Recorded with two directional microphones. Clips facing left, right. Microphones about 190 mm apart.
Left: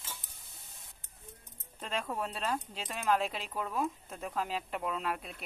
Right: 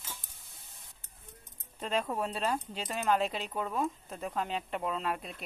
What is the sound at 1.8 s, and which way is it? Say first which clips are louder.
Speech: right 4 dB; 5° right (ahead or behind).